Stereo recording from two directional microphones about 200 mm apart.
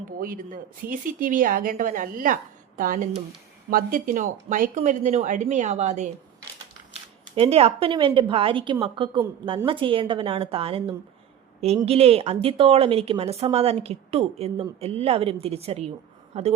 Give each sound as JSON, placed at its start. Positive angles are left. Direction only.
{"t": 0.2, "sound": "speech", "side_deg": -45}
{"t": 7.3, "sound": "speech", "side_deg": -30}